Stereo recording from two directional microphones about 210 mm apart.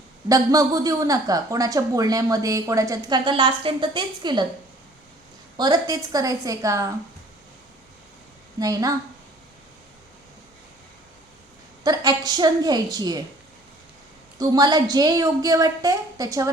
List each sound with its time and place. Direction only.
0.3 s speech: 15° right (ahead or behind)
5.5 s speech: 20° right (ahead or behind)
8.5 s speech: 15° right (ahead or behind)
11.8 s a woman's voice: 20° right (ahead or behind)
14.3 s speech: 20° right (ahead or behind)